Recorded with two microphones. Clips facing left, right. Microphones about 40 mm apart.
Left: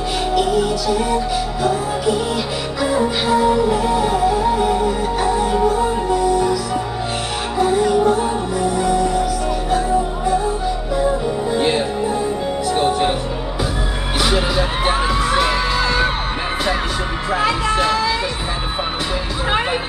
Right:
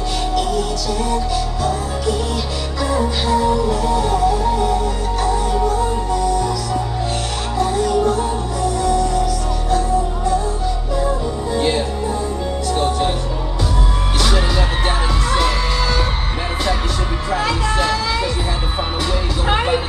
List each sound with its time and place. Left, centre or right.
0.3 s music: centre
14.2 s crowd: centre
17.3 s a sound: centre
19.4 s vehicle: centre